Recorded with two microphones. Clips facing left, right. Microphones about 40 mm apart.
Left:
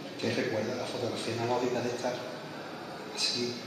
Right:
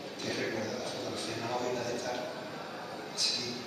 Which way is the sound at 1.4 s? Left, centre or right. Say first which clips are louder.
Left 4 dB; centre.